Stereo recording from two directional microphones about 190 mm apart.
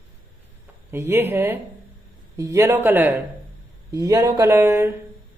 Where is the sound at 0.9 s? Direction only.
10° right (ahead or behind).